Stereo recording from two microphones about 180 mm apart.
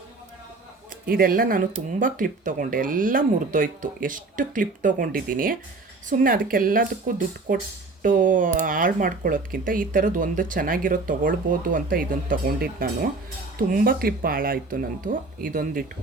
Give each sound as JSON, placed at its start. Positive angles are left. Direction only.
{"t": 1.0, "sound": "speech", "side_deg": -55}